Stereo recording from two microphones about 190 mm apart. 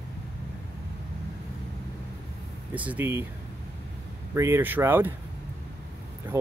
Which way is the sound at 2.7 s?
10° right (ahead or behind).